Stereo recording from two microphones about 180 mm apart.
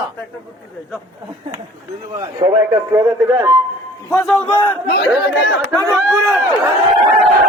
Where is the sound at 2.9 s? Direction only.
15° right (ahead or behind).